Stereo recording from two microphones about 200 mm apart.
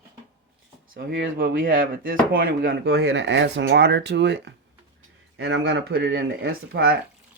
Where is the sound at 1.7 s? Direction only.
45° right (ahead or behind).